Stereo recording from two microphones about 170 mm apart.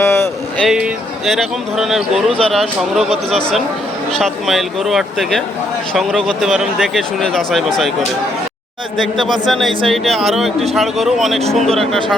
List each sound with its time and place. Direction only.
0.0 s a sound: 15° left (ahead or behind)
0.6 s a man's voice: centre (ahead or behind)
4.2 s a man's voice: centre (ahead or behind)
9.0 s a man's voice: centre (ahead or behind)